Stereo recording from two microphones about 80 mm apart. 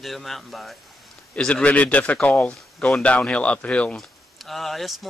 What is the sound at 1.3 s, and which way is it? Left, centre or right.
Speech, centre.